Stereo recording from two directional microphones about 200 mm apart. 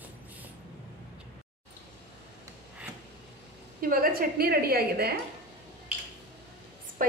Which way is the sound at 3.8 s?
45° right (ahead or behind).